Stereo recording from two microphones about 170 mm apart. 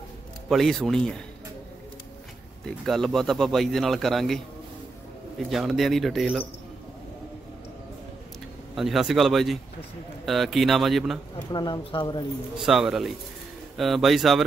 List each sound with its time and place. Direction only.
0.5 s speech: centre (ahead or behind)
2.6 s speech: centre (ahead or behind)
5.5 s speech: centre (ahead or behind)
8.7 s speech: centre (ahead or behind)
11.5 s speech: 25° left (ahead or behind)
12.5 s speech: centre (ahead or behind)